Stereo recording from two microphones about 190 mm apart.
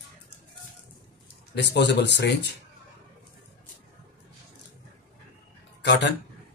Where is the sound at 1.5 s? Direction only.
65° left (ahead or behind).